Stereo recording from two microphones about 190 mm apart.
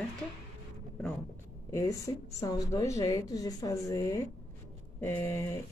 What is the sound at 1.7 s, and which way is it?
A woman's voice, 15° left (ahead or behind).